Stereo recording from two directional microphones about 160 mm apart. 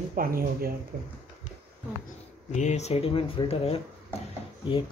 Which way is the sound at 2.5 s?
45° left (ahead or behind).